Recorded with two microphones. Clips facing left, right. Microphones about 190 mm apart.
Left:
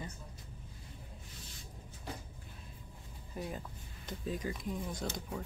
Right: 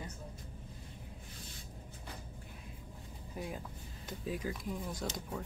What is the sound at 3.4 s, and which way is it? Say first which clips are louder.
Speech: left 1 dB; 10° right (ahead or behind).